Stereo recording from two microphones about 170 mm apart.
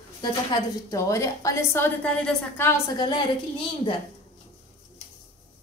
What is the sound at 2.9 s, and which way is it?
Speech, 25° left (ahead or behind).